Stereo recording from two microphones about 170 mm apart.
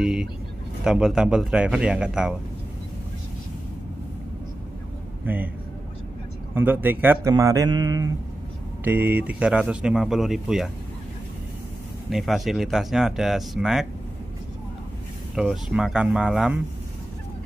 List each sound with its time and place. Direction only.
0.0 s speech: 5° right (ahead or behind)
5.2 s speech: 10° right (ahead or behind)
6.5 s a man's voice: 10° right (ahead or behind)
8.8 s speech: 10° right (ahead or behind)
12.1 s speech: centre (ahead or behind)
15.3 s speech: 5° right (ahead or behind)